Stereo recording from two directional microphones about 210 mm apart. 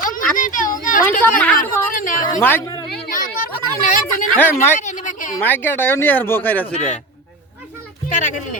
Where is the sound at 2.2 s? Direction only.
15° left (ahead or behind).